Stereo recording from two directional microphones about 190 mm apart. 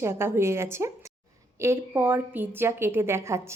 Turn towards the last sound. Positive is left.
turn(degrees=-15)  # may be behind; listen again after turning